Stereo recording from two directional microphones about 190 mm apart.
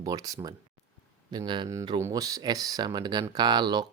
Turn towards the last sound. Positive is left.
turn(degrees=-20)  # may be behind; listen again after turning